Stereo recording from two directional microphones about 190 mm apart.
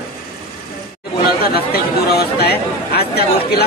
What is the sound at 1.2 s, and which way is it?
Speech, 55° left (ahead or behind).